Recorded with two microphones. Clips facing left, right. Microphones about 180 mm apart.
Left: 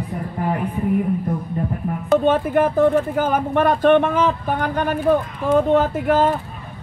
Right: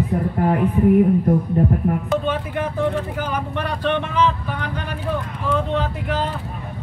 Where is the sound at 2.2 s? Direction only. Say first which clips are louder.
Left 7 dB; 50° left (ahead or behind).